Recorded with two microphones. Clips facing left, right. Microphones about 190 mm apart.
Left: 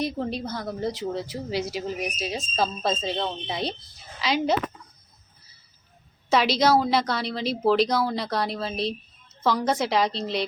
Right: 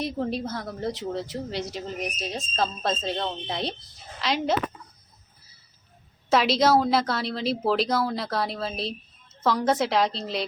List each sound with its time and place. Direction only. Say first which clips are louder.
0.0 s a woman's voice: even; centre (ahead or behind)
6.3 s a woman's voice: even; centre (ahead or behind)